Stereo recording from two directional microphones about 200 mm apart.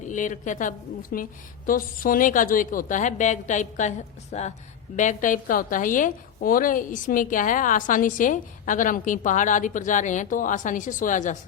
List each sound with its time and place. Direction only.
0.1 s a woman's voice: 40° left (ahead or behind)